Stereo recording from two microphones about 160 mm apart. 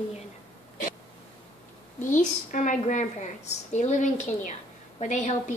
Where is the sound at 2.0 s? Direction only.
50° left (ahead or behind).